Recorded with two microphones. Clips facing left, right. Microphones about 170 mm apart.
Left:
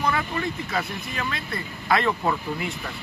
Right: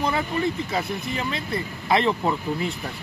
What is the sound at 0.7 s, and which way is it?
Speech, 25° right (ahead or behind).